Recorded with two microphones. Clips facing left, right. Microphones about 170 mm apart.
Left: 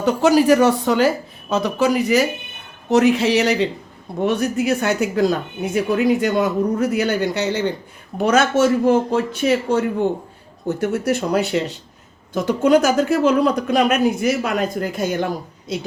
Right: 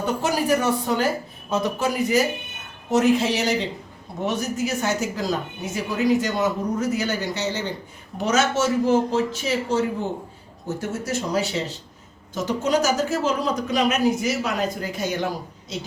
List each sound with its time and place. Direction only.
0.0 s a man's voice: 85° left; by 15.3 s 50° left (ahead or behind)